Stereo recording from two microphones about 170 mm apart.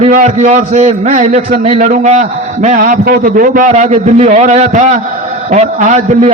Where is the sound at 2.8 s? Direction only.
60° right (ahead or behind); by 6.3 s 40° right (ahead or behind).